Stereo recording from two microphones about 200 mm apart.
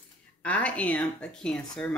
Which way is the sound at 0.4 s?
5° left (ahead or behind).